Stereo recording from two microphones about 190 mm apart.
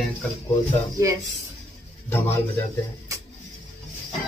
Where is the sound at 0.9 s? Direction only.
15° right (ahead or behind).